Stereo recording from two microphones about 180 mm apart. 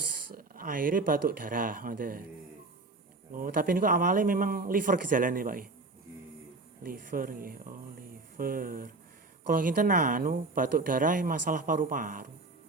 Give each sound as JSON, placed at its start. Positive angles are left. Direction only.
{"t": 0.0, "sound": "speech", "side_deg": -55}
{"t": 3.3, "sound": "speech", "side_deg": -50}
{"t": 6.8, "sound": "speech", "side_deg": -50}